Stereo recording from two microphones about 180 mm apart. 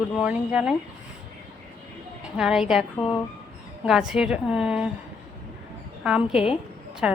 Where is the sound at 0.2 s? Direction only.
5° right (ahead or behind).